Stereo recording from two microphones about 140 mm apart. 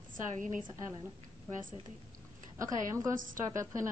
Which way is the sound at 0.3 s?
65° right (ahead or behind).